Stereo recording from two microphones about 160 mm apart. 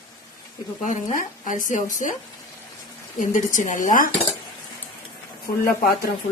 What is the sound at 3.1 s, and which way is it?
Speech, 55° left (ahead or behind).